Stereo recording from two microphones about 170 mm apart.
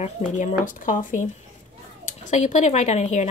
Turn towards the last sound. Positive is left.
turn(degrees=45)  # may be behind; listen again after turning